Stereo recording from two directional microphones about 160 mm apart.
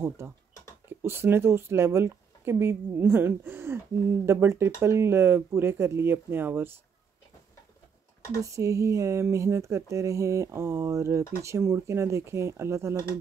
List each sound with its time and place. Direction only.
0.2 s speech: 15° right (ahead or behind)
8.4 s speech: 20° right (ahead or behind)